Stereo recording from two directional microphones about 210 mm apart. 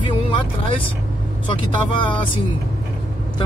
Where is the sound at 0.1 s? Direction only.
25° left (ahead or behind).